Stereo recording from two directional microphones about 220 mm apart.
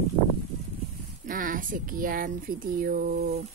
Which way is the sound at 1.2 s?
35° right (ahead or behind).